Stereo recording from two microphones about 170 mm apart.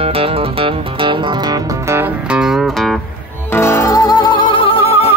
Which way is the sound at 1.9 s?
5° right (ahead or behind).